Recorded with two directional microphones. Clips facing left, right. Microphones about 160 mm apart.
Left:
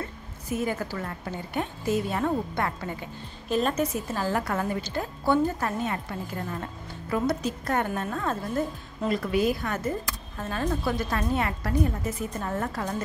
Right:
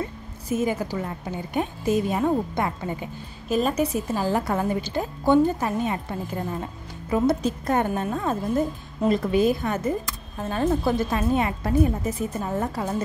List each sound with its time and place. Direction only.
0.6 s a woman's voice: 15° right (ahead or behind)
12.4 s a woman's voice: 10° right (ahead or behind)